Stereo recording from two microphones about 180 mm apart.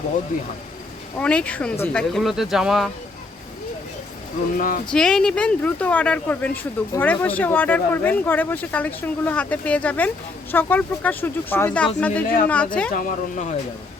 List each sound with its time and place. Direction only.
1.2 s speech: 5° left (ahead or behind)
4.5 s speech: 50° left (ahead or behind)
4.9 s speech: 5° left (ahead or behind)
12.9 s speech: 50° left (ahead or behind)